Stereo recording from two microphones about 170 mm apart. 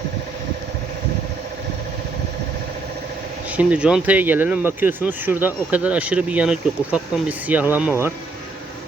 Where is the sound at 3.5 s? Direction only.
10° right (ahead or behind).